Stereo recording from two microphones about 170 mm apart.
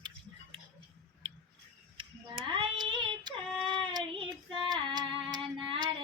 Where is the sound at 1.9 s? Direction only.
30° right (ahead or behind).